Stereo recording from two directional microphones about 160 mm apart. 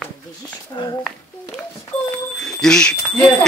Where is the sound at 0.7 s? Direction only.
30° left (ahead or behind).